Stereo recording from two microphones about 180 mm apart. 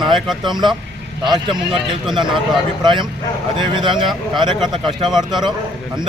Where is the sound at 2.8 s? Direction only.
25° right (ahead or behind).